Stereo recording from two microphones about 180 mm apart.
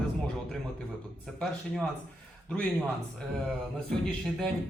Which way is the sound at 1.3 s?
5° left (ahead or behind).